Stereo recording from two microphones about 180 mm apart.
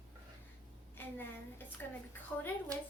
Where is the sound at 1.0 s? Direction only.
10° left (ahead or behind).